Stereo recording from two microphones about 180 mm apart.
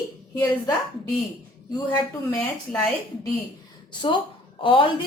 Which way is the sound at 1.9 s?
10° left (ahead or behind).